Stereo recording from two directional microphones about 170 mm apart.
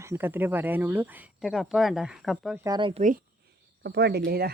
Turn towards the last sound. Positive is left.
turn(degrees=-65)  # may be behind; listen again after turning